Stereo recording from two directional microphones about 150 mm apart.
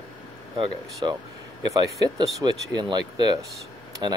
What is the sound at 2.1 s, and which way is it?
Speech, 30° right (ahead or behind).